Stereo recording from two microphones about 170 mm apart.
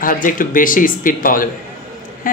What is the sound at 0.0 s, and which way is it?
Speech, 55° left (ahead or behind).